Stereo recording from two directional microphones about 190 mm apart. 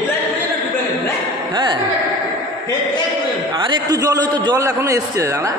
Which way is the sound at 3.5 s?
25° right (ahead or behind).